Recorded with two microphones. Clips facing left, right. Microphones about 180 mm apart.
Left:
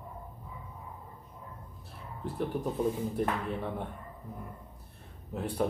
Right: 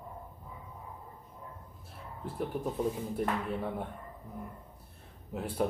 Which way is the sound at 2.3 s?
Centre (ahead or behind).